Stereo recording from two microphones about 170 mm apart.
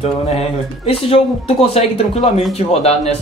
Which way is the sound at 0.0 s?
35° left (ahead or behind).